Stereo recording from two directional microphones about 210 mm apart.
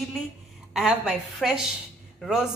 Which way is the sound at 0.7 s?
Centre (ahead or behind).